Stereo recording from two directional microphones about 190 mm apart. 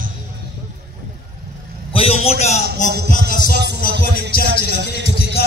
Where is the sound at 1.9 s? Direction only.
30° left (ahead or behind).